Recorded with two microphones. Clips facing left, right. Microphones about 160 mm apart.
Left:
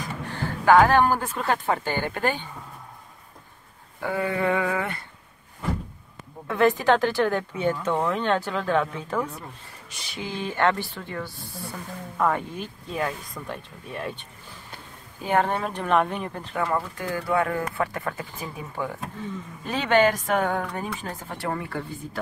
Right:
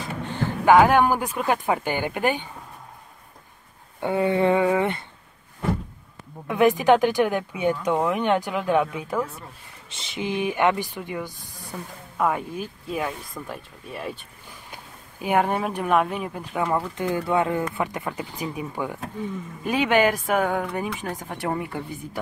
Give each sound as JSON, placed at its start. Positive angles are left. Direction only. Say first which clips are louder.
{"t": 0.3, "sound": "speech", "louder": "right 1 dB", "side_deg": -15}
{"t": 4.0, "sound": "speech", "louder": "right 5 dB", "side_deg": -25}
{"t": 6.4, "sound": "speech", "louder": "right 2 dB", "side_deg": -15}
{"t": 9.8, "sound": "speech", "louder": "right 6 dB", "side_deg": -25}
{"t": 15.2, "sound": "speech", "louder": "right 1 dB", "side_deg": -10}